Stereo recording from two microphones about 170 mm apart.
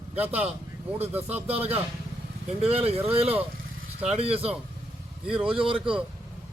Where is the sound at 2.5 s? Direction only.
35° right (ahead or behind).